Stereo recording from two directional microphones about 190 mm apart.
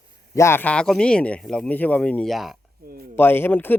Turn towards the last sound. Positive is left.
turn(degrees=10)  # may be behind; listen again after turning